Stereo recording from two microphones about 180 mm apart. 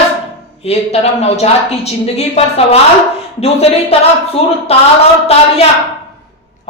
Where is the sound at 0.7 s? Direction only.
35° left (ahead or behind).